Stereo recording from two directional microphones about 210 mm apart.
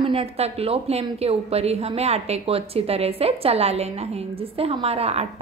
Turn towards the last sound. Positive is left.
turn(degrees=-30)  # may be behind; listen again after turning